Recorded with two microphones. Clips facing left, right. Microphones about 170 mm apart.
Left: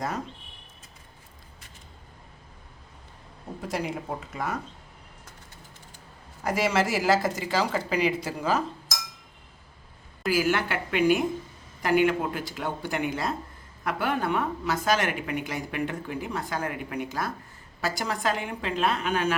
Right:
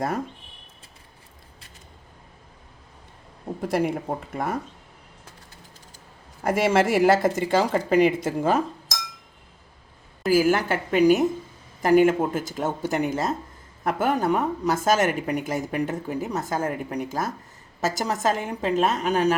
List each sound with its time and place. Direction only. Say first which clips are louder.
3.6 s a woman's voice: right 7 dB; 55° right (ahead or behind)
6.4 s a woman's voice: right 5 dB; 55° right (ahead or behind)
10.2 s a woman's voice: right 5 dB; 45° right (ahead or behind)